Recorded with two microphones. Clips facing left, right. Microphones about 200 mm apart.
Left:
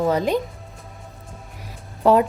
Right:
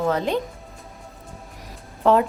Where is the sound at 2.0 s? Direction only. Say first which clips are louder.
Left 2 dB; 10° left (ahead or behind).